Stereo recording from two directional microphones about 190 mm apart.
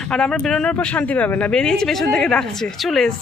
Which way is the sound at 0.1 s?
5° left (ahead or behind).